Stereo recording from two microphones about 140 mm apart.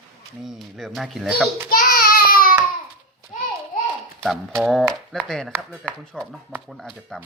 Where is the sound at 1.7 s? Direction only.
85° left.